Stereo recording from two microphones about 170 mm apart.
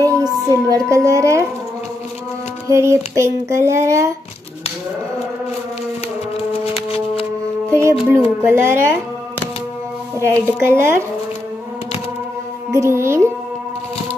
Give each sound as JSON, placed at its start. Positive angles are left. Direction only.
{"t": 0.0, "sound": "speech", "side_deg": -20}
{"t": 2.7, "sound": "music", "side_deg": -15}
{"t": 6.3, "sound": "music", "side_deg": 35}
{"t": 8.0, "sound": "music", "side_deg": -15}
{"t": 10.1, "sound": "music", "side_deg": -15}
{"t": 12.7, "sound": "music", "side_deg": -15}